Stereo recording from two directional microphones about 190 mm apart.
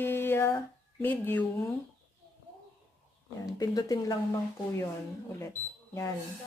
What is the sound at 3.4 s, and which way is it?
Speech, 20° left (ahead or behind).